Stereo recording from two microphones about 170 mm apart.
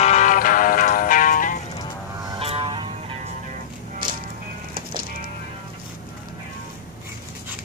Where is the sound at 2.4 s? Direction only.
35° right (ahead or behind).